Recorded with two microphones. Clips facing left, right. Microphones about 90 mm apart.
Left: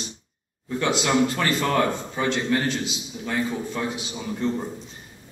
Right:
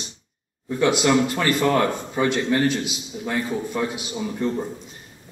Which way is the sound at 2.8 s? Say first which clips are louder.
Right 2 dB; 15° right (ahead or behind).